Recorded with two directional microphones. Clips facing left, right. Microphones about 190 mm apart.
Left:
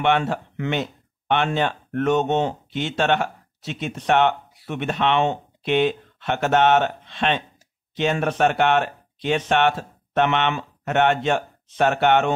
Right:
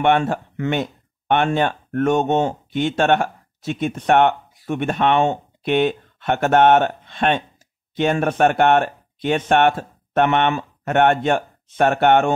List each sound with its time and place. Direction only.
0.0 s speech: 50° right (ahead or behind)